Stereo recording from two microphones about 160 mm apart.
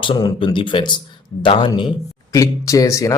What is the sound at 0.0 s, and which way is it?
A man's voice, 30° left (ahead or behind).